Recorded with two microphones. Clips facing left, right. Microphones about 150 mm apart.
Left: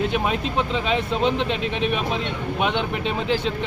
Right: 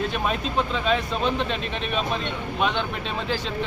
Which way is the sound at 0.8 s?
20° left (ahead or behind).